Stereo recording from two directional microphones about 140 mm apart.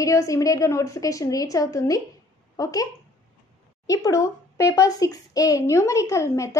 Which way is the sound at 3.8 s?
20° left (ahead or behind).